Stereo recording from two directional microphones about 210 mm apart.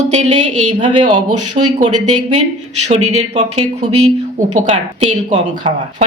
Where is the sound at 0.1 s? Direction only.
35° right (ahead or behind).